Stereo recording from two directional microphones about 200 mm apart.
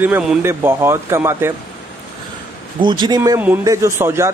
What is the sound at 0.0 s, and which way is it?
A man's voice, 10° right (ahead or behind).